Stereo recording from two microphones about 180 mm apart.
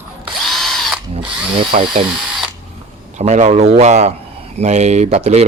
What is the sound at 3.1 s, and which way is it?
A man's voice, 40° right (ahead or behind).